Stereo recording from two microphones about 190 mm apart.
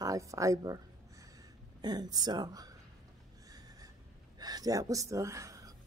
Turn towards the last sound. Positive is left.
turn(degrees=-20)  # may be behind; listen again after turning